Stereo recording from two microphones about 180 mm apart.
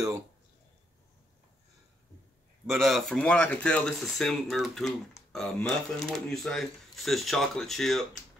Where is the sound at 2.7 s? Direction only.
Centre (ahead or behind).